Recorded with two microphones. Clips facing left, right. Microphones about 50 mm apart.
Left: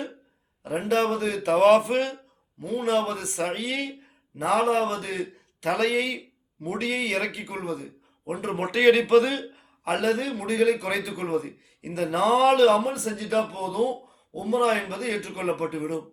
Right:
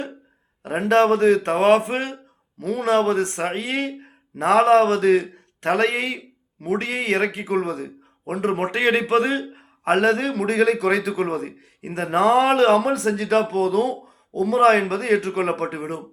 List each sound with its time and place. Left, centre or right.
0.6 s a man's voice: right
2.6 s a man's voice: right
7.5 s a man's voice: right
10.3 s speech: right
11.9 s speech: right
12.8 s speech: right